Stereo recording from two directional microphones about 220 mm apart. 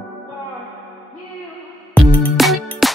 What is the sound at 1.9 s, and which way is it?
Music, 5° left (ahead or behind).